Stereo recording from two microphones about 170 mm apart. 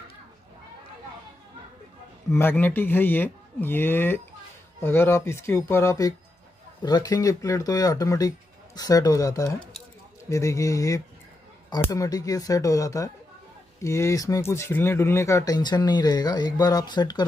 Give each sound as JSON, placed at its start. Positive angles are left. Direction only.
{"t": 2.3, "sound": "speech", "side_deg": 10}